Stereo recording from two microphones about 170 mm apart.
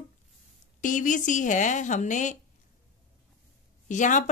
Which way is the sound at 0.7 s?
50° left (ahead or behind).